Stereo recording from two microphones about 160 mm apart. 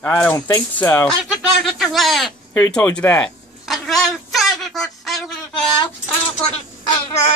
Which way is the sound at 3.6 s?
Centre (ahead or behind).